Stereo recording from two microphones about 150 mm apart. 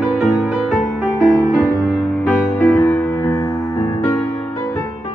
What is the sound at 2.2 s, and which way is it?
Music, 10° left (ahead or behind).